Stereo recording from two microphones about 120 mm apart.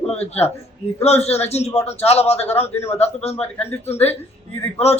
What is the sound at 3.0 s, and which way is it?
Speech, 60° left (ahead or behind).